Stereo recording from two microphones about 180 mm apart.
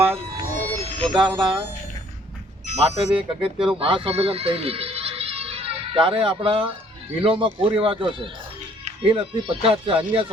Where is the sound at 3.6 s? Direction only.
30° right (ahead or behind).